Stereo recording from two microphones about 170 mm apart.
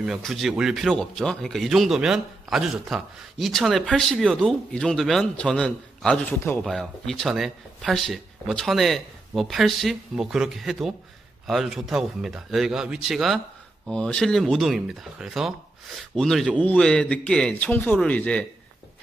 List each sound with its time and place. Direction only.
0.0 s a man's voice: centre (ahead or behind)